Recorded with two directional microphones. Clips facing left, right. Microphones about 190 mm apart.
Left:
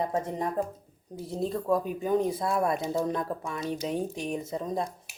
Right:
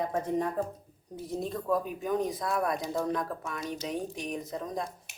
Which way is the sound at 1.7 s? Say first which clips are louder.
Left 3 dB; 30° left (ahead or behind).